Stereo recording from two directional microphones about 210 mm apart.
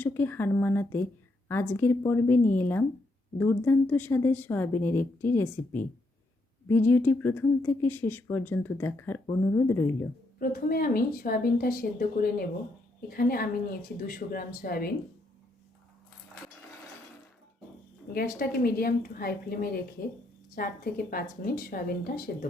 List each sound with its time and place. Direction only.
0.0 s speech: 10° left (ahead or behind)
6.7 s speech: 10° left (ahead or behind)
10.3 s speech: 45° left (ahead or behind)
18.1 s speech: 45° left (ahead or behind)